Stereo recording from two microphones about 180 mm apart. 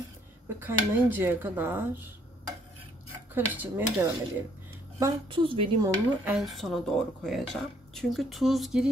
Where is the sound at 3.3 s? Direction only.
10° right (ahead or behind).